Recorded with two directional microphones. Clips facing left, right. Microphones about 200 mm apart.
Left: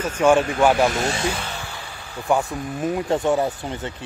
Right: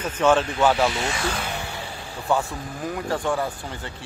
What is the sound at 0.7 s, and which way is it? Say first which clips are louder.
Speech: left 3 dB; 45° left (ahead or behind).